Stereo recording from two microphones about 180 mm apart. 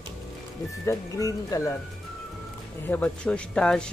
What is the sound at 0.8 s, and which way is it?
Speech, 20° left (ahead or behind).